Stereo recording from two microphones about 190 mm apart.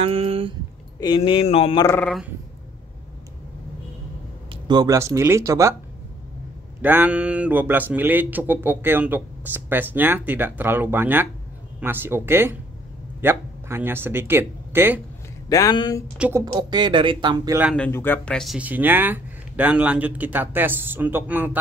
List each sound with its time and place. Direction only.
0.0 s speech: 30° right (ahead or behind)
1.0 s a sound: 25° left (ahead or behind)
1.9 s a sound: 10° left (ahead or behind)
4.5 s speech: 25° right (ahead or behind)
6.8 s speech: 10° right (ahead or behind)
15.4 s a sound: 20° left (ahead or behind)
16.2 s speech: 10° right (ahead or behind)
16.5 s speech: 25° right (ahead or behind)
17.7 s speech: 10° left (ahead or behind); by 21.5 s 10° right (ahead or behind)